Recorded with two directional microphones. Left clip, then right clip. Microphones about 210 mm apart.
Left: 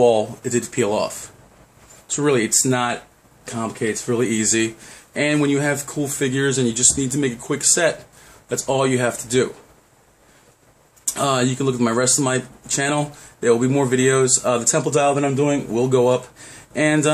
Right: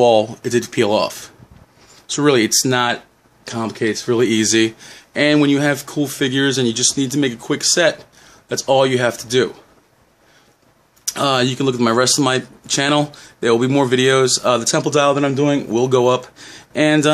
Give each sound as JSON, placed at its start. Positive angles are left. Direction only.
{"t": 0.0, "sound": "speech", "side_deg": -40}
{"t": 11.1, "sound": "speech", "side_deg": -40}